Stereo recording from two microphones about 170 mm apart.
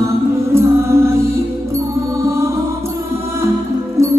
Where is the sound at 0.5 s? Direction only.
15° right (ahead or behind).